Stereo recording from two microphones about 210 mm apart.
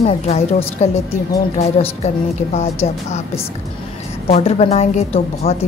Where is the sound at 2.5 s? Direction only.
30° left (ahead or behind).